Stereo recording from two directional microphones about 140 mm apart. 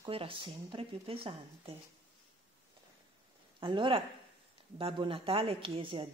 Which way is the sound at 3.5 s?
35° right (ahead or behind).